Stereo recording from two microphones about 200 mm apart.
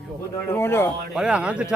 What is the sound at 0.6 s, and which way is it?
Speech, 10° left (ahead or behind).